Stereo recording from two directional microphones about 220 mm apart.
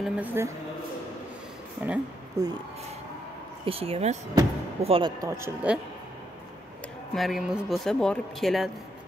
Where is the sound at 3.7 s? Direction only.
25° right (ahead or behind); by 5.8 s 10° right (ahead or behind).